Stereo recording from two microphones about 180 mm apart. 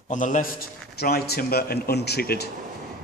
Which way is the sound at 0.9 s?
60° left (ahead or behind).